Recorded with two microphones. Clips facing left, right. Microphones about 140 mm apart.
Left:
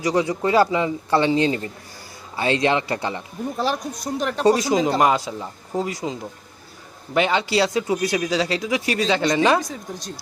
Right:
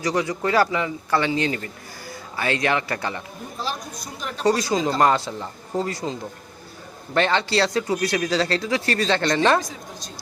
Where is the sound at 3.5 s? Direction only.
60° left (ahead or behind).